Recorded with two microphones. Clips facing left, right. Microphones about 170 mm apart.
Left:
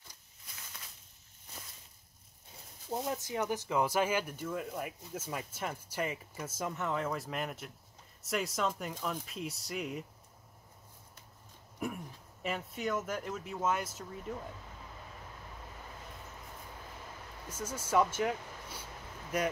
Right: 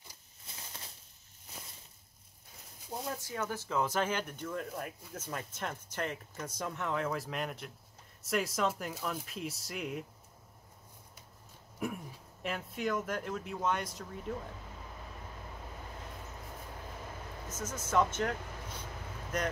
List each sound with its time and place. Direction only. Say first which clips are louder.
0.5 s a sound: right 3 dB; 30° right (ahead or behind)
3.1 s speech: left 2 dB; 20° left (ahead or behind); by 10.0 s centre (ahead or behind)
11.8 s speech: right 1 dB; centre (ahead or behind)
17.5 s speech: left 2 dB; 10° left (ahead or behind)